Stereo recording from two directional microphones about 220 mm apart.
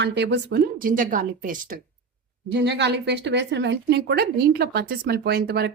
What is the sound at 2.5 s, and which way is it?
Speech, 50° right (ahead or behind).